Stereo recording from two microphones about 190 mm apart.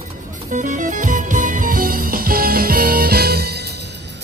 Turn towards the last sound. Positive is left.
turn(degrees=-55)  # may be behind; listen again after turning